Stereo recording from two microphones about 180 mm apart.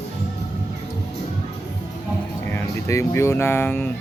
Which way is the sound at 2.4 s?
15° left (ahead or behind).